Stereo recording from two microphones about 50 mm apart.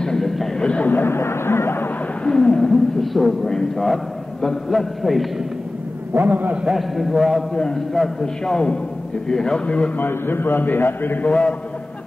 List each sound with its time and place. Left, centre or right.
0.0 s a sound: centre
0.6 s a sound: left
0.8 s speech: left
1.1 s speech: left
2.2 s a man's voice: centre
3.0 s a man's voice: centre
6.1 s a man's voice: right
6.7 s a man's voice: centre
7.5 s a man's voice: centre
9.9 s a man's voice: left
11.2 s a man's voice: left